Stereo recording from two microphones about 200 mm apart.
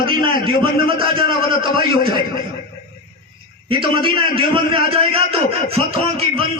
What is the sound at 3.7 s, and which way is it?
A man's voice, 25° right (ahead or behind).